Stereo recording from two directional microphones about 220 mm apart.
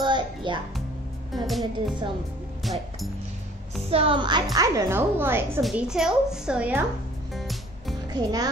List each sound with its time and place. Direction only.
0.0 s music: 20° right (ahead or behind)
1.3 s speech: centre (ahead or behind)
2.6 s music: centre (ahead or behind)
3.9 s a woman's voice: 25° right (ahead or behind); by 6.8 s 5° right (ahead or behind)
7.3 s music: centre (ahead or behind)
8.1 s a child's voice: 15° right (ahead or behind)